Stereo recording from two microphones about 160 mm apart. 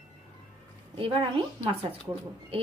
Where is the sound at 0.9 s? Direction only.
35° right (ahead or behind).